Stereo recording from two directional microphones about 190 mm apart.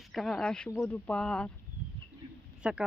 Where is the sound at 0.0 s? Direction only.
Centre (ahead or behind).